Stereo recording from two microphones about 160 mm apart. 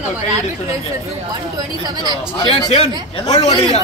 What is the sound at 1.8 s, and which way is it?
Speech, 25° right (ahead or behind).